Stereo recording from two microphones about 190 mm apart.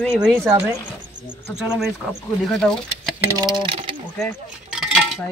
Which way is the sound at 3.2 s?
20° right (ahead or behind).